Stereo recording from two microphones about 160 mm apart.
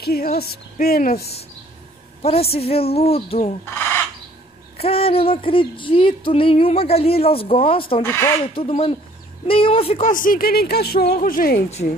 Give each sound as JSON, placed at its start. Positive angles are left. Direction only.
{"t": 0.0, "sound": "speech", "side_deg": 75}
{"t": 2.5, "sound": "music", "side_deg": 40}
{"t": 4.7, "sound": "music", "side_deg": 35}
{"t": 8.0, "sound": "speech", "side_deg": 15}
{"t": 8.5, "sound": "music", "side_deg": 35}
{"t": 10.0, "sound": "speech", "side_deg": 55}